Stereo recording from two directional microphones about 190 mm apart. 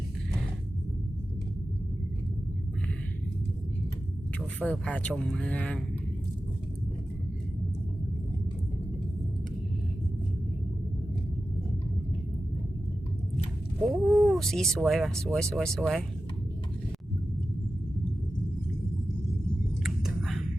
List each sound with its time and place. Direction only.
4.4 s speech: 5° left (ahead or behind)
13.8 s speech: centre (ahead or behind)
19.8 s a sound: centre (ahead or behind)